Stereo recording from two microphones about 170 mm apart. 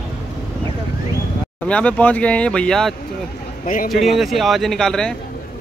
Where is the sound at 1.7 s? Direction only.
5° left (ahead or behind).